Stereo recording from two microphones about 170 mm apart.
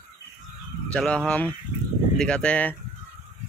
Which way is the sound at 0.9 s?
5° left (ahead or behind).